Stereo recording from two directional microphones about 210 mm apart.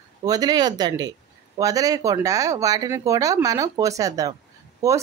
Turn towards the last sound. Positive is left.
turn(degrees=-15)  # may be behind; listen again after turning